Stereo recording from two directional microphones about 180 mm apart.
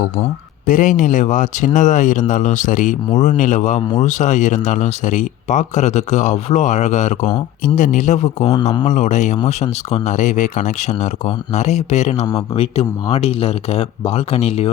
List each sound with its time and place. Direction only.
0.6 s speech: 45° left (ahead or behind)